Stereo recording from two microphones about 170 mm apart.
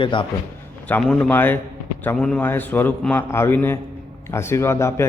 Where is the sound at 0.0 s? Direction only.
30° left (ahead or behind).